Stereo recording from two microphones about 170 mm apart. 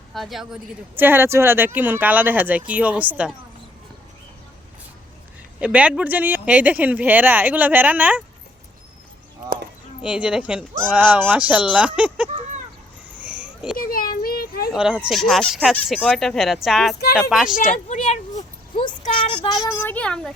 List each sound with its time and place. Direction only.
0.1 s speech: centre (ahead or behind)
0.9 s speech: 10° right (ahead or behind)
5.5 s speech: 5° right (ahead or behind)
10.0 s speech: 5° right (ahead or behind)
13.1 s a sound: 10° right (ahead or behind)
13.7 s a sound: 60° left (ahead or behind)
14.7 s speech: 5° right (ahead or behind)
17.5 s a sound: 50° left (ahead or behind)
19.3 s child singing: 25° left (ahead or behind)
19.8 s a child's voice: 10° left (ahead or behind)